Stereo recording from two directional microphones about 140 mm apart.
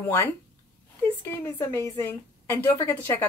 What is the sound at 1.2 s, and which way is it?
Speech, 15° left (ahead or behind).